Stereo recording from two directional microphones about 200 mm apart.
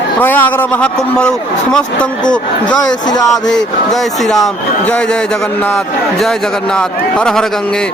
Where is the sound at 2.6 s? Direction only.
20° left (ahead or behind).